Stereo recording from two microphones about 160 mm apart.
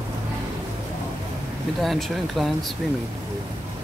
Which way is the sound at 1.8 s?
Centre (ahead or behind).